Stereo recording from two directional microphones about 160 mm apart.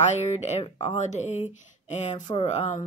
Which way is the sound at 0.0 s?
45° left (ahead or behind).